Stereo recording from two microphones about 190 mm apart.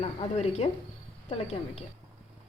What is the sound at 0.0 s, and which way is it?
A woman's voice, 35° left (ahead or behind).